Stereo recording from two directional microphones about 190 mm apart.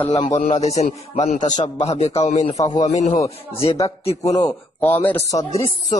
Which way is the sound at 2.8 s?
40° left (ahead or behind).